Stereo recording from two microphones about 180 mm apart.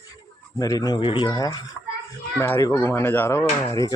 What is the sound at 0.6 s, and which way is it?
Speech, 20° left (ahead or behind).